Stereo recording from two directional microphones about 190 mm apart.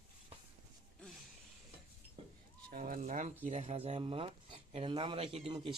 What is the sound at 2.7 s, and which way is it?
Speech, 45° right (ahead or behind).